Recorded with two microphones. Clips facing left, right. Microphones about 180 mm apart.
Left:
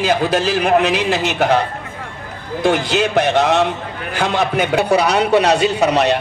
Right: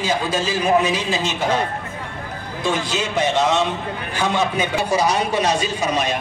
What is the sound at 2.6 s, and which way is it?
A man's voice, 65° left (ahead or behind).